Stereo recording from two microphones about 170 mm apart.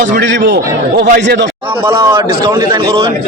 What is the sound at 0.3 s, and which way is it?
A man's voice, 85° right.